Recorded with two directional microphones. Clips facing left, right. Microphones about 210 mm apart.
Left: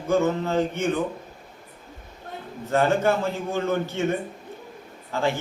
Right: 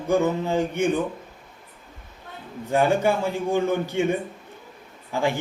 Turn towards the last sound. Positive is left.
turn(degrees=-15)  # may be behind; listen again after turning